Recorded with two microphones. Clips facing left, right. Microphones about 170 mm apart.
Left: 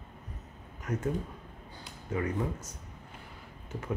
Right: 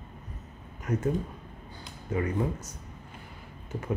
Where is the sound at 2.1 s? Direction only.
10° right (ahead or behind).